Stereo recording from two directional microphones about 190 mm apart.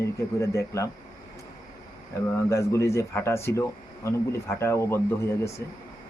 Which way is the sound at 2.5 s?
15° left (ahead or behind).